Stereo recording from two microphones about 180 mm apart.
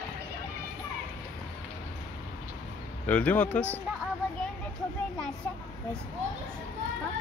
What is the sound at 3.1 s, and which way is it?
Speech, 5° left (ahead or behind).